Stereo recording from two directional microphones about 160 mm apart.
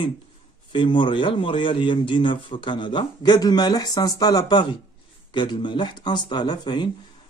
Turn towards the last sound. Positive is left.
turn(degrees=25)  # may be behind; listen again after turning